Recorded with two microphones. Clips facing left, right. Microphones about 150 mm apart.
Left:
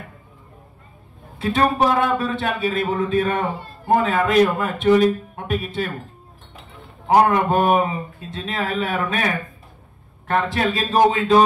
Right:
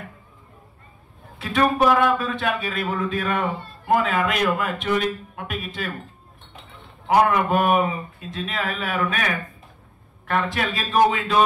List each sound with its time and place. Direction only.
1.4 s a man's voice: 30° left (ahead or behind)
7.1 s a man's voice: 35° left (ahead or behind)